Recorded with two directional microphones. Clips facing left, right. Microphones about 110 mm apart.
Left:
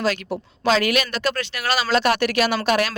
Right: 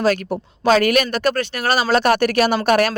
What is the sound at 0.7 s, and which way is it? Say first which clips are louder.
Speech: right 5 dB; 50° right (ahead or behind).